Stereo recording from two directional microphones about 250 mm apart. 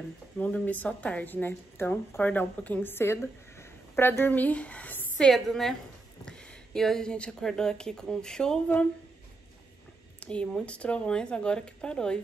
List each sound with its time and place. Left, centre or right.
0.4 s a woman's voice: centre
10.2 s speech: centre